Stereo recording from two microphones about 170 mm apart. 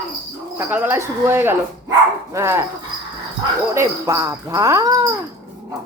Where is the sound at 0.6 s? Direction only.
10° right (ahead or behind).